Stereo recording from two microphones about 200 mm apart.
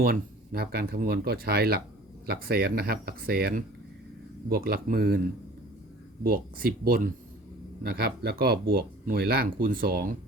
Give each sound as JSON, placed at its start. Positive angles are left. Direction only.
{"t": 0.0, "sound": "speech", "side_deg": -50}
{"t": 6.2, "sound": "speech", "side_deg": -45}